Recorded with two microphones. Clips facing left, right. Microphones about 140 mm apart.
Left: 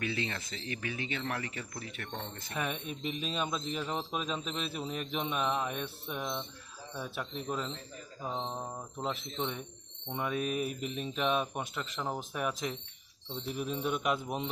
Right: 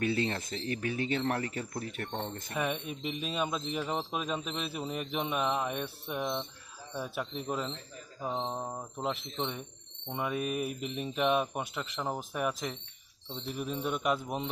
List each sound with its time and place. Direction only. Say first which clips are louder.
0.0 s speech: right 5 dB; 40° right (ahead or behind)
2.5 s speech: right 2 dB; 5° right (ahead or behind)